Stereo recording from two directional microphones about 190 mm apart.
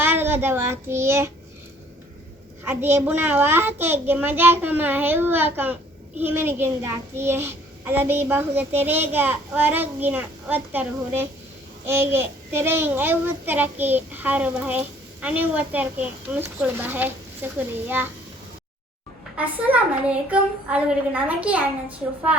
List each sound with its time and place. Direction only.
0.0 s a child's voice: 10° right (ahead or behind)
2.6 s a child's voice: 10° right (ahead or behind)
19.4 s a child's voice: 5° right (ahead or behind)